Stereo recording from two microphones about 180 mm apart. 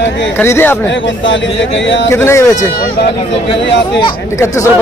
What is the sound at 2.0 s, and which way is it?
Speech, 15° left (ahead or behind).